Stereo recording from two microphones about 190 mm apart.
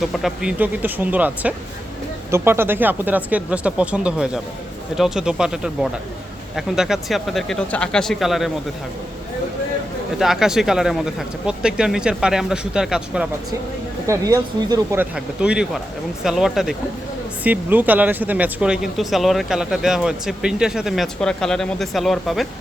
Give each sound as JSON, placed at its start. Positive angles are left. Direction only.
{"t": 0.1, "sound": "speech", "side_deg": 0}
{"t": 10.2, "sound": "speech", "side_deg": 0}
{"t": 14.1, "sound": "speech", "side_deg": -15}
{"t": 15.1, "sound": "speech", "side_deg": -5}